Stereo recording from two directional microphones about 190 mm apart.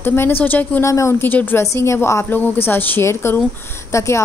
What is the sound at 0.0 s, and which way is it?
A woman's voice, 10° left (ahead or behind).